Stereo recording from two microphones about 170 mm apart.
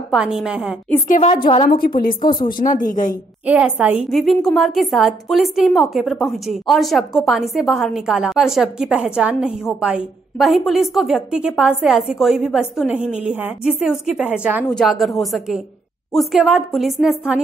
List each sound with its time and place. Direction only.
0.1 s a woman's voice: 5° right (ahead or behind)
1.0 s a woman's voice: 50° left (ahead or behind)
1.3 s a woman's voice: 30° left (ahead or behind)
1.6 s a woman's voice: 55° left (ahead or behind)
3.4 s a woman's voice: 5° right (ahead or behind)
14.7 s a woman's voice: centre (ahead or behind)